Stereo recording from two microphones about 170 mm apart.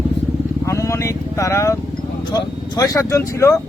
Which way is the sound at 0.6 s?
20° left (ahead or behind).